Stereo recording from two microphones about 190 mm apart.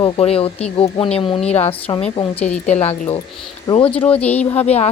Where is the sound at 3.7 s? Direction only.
30° left (ahead or behind).